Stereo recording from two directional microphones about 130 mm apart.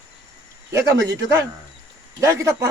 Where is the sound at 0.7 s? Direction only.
25° right (ahead or behind).